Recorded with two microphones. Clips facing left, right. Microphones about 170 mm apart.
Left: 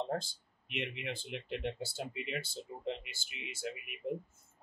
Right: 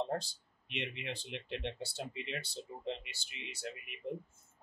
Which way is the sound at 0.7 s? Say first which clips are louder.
Left 2 dB; centre (ahead or behind).